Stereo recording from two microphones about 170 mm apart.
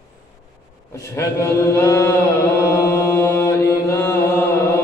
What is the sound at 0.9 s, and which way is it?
Chant, 15° left (ahead or behind).